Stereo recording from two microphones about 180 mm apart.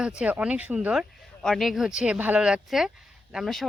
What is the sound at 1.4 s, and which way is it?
Speech, centre (ahead or behind).